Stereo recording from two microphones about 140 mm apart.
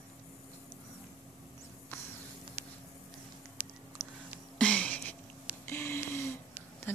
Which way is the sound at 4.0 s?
Centre (ahead or behind).